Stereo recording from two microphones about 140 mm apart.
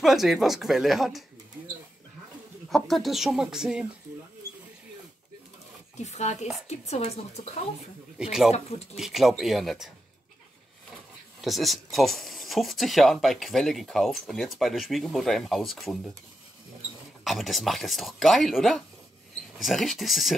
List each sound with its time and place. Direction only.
0.0 s speech: centre (ahead or behind)
2.7 s speech: centre (ahead or behind)
5.9 s speech: 55° left (ahead or behind)
8.2 s speech: 5° right (ahead or behind)
11.4 s speech: centre (ahead or behind)
17.2 s speech: centre (ahead or behind)